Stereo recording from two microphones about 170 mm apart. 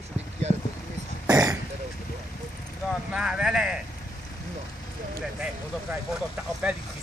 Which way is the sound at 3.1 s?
5° right (ahead or behind).